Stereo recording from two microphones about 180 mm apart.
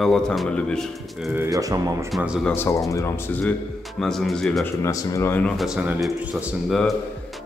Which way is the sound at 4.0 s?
Centre (ahead or behind).